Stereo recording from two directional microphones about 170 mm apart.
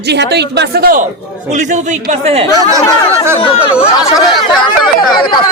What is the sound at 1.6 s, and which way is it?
Speech, 45° right (ahead or behind).